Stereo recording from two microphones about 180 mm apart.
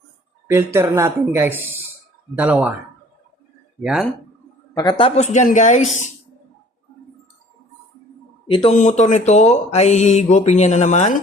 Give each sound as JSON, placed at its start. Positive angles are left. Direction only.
{"t": 0.4, "sound": "speech", "side_deg": -15}
{"t": 3.8, "sound": "speech", "side_deg": 0}
{"t": 4.7, "sound": "speech", "side_deg": 20}
{"t": 8.4, "sound": "speech", "side_deg": 30}